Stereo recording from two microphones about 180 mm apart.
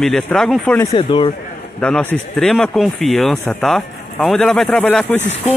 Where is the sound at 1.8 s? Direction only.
5° left (ahead or behind).